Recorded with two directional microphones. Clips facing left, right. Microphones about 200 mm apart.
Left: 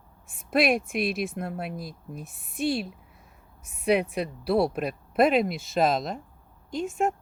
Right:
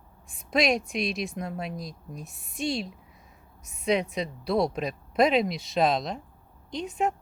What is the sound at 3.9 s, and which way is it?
Speech, 5° left (ahead or behind).